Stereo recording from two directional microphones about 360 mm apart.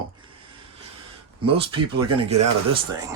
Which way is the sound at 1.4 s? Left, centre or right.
Centre.